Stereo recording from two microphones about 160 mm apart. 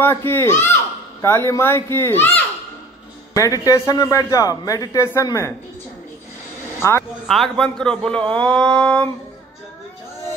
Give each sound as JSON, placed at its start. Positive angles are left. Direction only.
{"t": 0.0, "sound": "a man's voice", "side_deg": 15}
{"t": 6.8, "sound": "speech", "side_deg": 15}
{"t": 7.2, "sound": "a man's voice", "side_deg": 0}